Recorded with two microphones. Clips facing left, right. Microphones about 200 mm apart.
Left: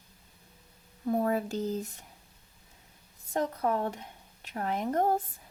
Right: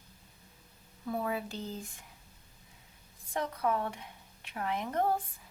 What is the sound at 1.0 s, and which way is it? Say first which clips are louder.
A woman's voice: left 6 dB; 40° left (ahead or behind).